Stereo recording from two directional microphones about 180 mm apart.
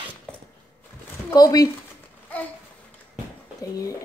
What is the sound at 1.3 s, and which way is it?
Speech, 20° left (ahead or behind).